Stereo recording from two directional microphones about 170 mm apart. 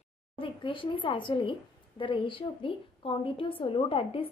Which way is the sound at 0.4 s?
30° left (ahead or behind).